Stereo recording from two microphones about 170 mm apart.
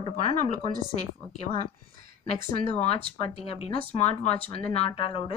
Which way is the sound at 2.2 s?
40° left (ahead or behind).